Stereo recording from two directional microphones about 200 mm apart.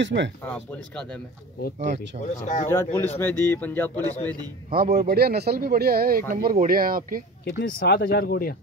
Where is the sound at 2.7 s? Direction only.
15° left (ahead or behind).